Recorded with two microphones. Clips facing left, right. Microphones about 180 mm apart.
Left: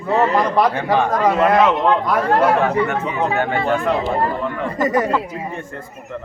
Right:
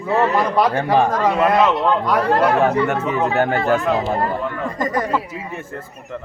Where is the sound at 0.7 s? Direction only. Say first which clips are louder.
Right 2 dB; 40° right (ahead or behind).